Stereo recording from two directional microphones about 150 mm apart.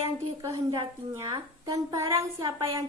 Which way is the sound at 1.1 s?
20° right (ahead or behind).